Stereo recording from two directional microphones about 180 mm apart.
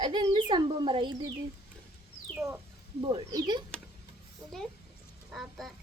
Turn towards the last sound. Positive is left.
turn(degrees=0)  # may be behind; listen again after turning